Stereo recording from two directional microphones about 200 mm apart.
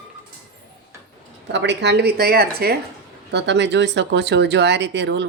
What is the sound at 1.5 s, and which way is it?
Speech, 60° right (ahead or behind).